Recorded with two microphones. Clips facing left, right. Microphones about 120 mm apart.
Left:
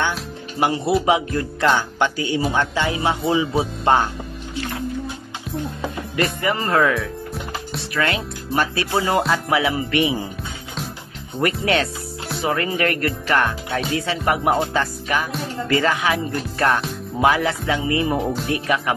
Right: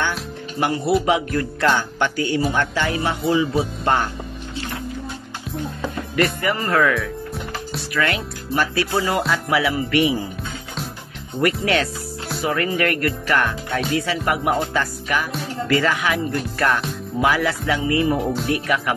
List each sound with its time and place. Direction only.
0.6 s speech: 25° left (ahead or behind)
6.1 s speech: 25° left (ahead or behind)
11.6 s speech: 25° left (ahead or behind)